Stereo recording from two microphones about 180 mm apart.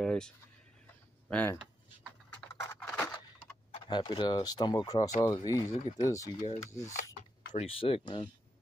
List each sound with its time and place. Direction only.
0.0 s a sound: 5° left (ahead or behind)
1.3 s speech: 10° left (ahead or behind)
2.5 s a sound: 15° left (ahead or behind)
3.9 s speech: 25° left (ahead or behind)
6.4 s rub: 40° left (ahead or behind)
7.5 s speech: 30° left (ahead or behind)